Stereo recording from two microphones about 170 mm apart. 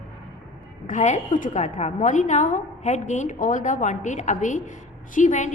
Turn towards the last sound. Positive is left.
turn(degrees=45)  # may be behind; listen again after turning